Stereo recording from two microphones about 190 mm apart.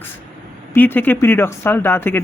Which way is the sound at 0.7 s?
10° left (ahead or behind).